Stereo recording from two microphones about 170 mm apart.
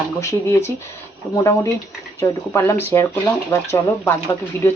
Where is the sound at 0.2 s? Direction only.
15° left (ahead or behind).